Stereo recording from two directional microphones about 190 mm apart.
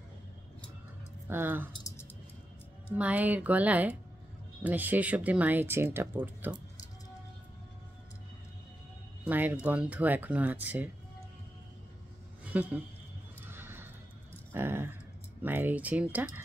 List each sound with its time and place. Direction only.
1.2 s speech: 10° right (ahead or behind)
1.7 s keys jangling: 15° left (ahead or behind)
3.0 s speech: 10° right (ahead or behind)
9.2 s speech: 10° right (ahead or behind)
12.4 s speech: 5° right (ahead or behind)
13.5 s horse: 10° right (ahead or behind)
14.5 s a sound: 10° right (ahead or behind)
15.4 s speech: 10° right (ahead or behind)